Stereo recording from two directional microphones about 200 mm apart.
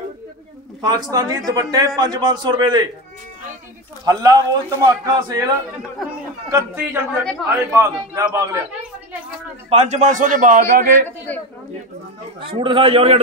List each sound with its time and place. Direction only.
0.7 s a man's voice: 20° right (ahead or behind)
4.0 s a man's voice: 20° right (ahead or behind)
6.5 s a man's voice: 15° right (ahead or behind)
9.7 s a man's voice: 35° right (ahead or behind)
11.1 s a man's voice: 10° left (ahead or behind)
12.4 s a man's voice: 25° right (ahead or behind)